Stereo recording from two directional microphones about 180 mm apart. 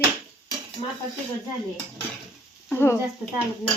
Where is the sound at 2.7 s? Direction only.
15° left (ahead or behind).